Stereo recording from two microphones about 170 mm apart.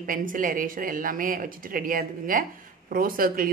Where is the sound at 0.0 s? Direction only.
55° right (ahead or behind).